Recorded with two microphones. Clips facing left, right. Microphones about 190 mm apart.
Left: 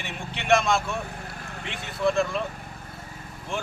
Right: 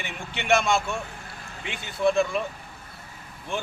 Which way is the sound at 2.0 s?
Centre (ahead or behind).